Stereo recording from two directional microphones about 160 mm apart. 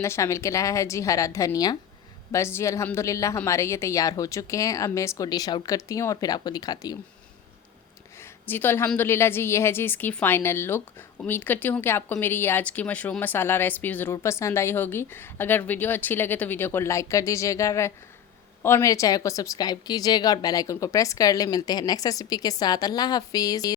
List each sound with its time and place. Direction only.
0.0 s a woman's voice: 20° left (ahead or behind)
8.2 s a sound: 10° left (ahead or behind)
8.9 s a woman's voice: 15° left (ahead or behind)